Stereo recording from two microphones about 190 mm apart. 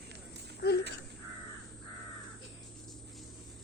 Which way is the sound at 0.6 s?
60° left (ahead or behind).